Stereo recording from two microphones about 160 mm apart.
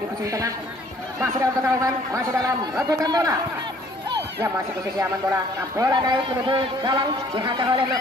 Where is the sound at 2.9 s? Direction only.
25° right (ahead or behind).